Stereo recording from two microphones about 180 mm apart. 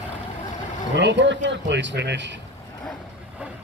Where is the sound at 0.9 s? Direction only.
75° right (ahead or behind).